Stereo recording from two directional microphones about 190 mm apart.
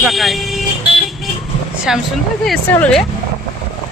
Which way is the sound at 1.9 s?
5° right (ahead or behind).